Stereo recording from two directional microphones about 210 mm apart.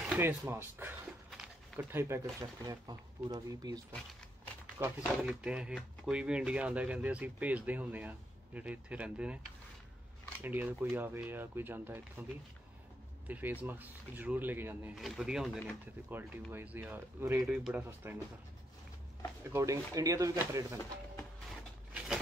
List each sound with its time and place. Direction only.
0.1 s speech: 10° right (ahead or behind)
5.0 s speech: centre (ahead or behind)
10.4 s speech: 10° right (ahead or behind)
13.3 s speech: 10° right (ahead or behind)
19.5 s speech: 15° right (ahead or behind)
21.9 s a sound: 5° right (ahead or behind)